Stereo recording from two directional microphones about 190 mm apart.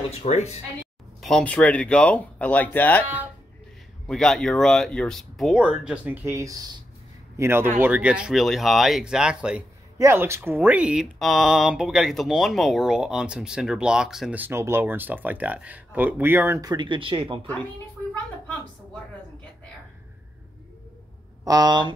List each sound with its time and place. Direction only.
0.1 s speech: 35° left (ahead or behind)
1.2 s speech: 5° left (ahead or behind)
4.1 s speech: 5° left (ahead or behind); by 17.5 s 30° right (ahead or behind)
21.5 s speech: 20° right (ahead or behind)